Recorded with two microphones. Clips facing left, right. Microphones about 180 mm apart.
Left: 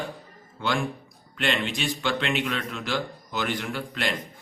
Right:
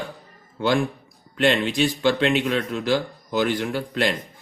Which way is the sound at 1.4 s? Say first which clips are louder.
Right 7 dB; 40° right (ahead or behind).